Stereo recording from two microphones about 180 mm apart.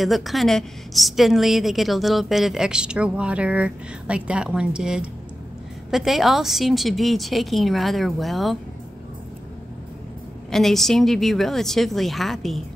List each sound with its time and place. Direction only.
0.0 s a woman's voice: centre (ahead or behind)
10.5 s a woman's voice: centre (ahead or behind)